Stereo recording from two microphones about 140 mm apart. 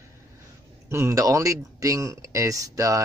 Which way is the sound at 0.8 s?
20° right (ahead or behind).